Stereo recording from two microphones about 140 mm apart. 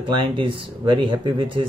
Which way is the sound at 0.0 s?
35° right (ahead or behind).